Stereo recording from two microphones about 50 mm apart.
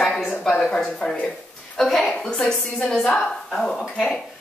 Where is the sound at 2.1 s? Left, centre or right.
Centre.